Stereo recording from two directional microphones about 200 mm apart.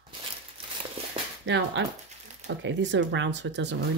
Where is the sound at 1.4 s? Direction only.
60° right (ahead or behind).